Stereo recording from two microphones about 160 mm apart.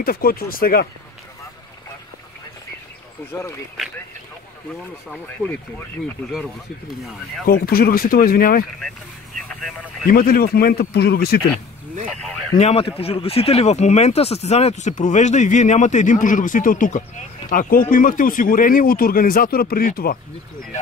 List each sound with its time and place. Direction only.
0.0 s speech: 70° left (ahead or behind)
5.4 s speech: 5° right (ahead or behind)
7.4 s speech: 70° left (ahead or behind)
9.5 s speech: centre (ahead or behind)
10.0 s speech: 65° left (ahead or behind); by 11.4 s 80° left
12.1 s speech: 5° left (ahead or behind)
12.5 s speech: 40° left (ahead or behind); by 20.2 s 65° left (ahead or behind)